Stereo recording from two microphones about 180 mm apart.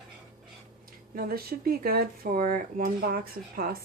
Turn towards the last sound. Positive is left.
turn(degrees=-55)  # may be behind; listen again after turning